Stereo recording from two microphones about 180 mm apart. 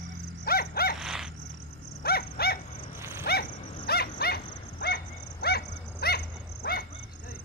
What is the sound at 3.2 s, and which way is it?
Dog, 55° left (ahead or behind).